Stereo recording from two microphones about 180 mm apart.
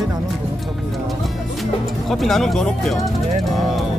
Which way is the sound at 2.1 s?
Centre (ahead or behind).